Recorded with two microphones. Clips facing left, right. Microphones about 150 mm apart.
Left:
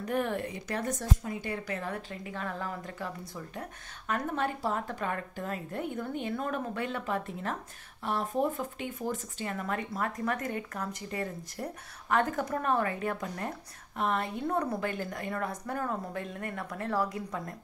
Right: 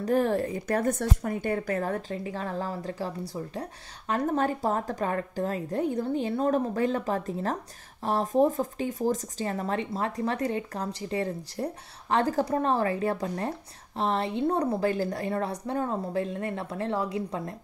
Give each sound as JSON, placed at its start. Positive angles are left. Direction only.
{"t": 0.0, "sound": "speech", "side_deg": -35}
{"t": 0.7, "sound": "speech", "side_deg": -55}